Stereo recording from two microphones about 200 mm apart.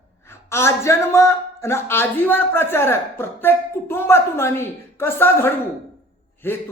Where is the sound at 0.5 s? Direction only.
15° left (ahead or behind).